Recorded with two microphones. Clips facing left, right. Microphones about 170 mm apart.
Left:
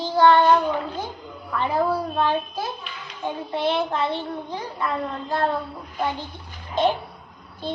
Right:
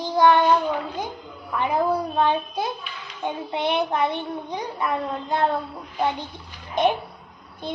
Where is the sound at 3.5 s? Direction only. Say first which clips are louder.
Even; 20° right (ahead or behind).